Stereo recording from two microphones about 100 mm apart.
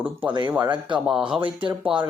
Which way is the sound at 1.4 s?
55° right (ahead or behind).